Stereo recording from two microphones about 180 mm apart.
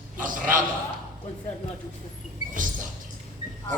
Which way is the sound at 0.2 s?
50° right (ahead or behind).